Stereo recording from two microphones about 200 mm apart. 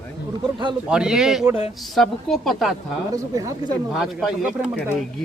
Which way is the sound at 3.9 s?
Centre (ahead or behind).